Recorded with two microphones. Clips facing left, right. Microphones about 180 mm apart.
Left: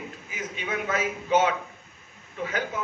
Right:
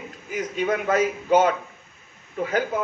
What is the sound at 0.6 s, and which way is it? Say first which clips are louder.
A man's voice: right 7 dB; 35° right (ahead or behind).